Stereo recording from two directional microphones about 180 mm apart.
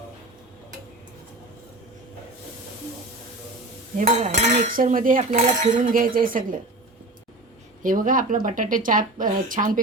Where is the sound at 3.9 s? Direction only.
40° right (ahead or behind).